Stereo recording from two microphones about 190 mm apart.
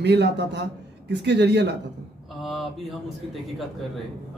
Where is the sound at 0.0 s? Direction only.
65° right (ahead or behind).